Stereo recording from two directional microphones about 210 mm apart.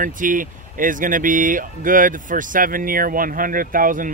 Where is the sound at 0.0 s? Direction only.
40° right (ahead or behind).